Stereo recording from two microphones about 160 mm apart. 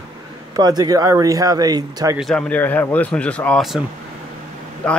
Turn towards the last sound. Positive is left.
turn(degrees=5)  # may be behind; listen again after turning